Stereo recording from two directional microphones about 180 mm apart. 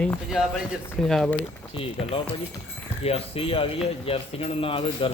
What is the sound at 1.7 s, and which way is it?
Speech, 30° left (ahead or behind).